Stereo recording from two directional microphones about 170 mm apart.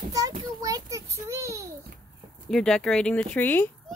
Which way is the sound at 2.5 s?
5° left (ahead or behind).